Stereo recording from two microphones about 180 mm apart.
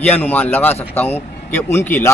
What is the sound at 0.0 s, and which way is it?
A man's voice, 10° left (ahead or behind).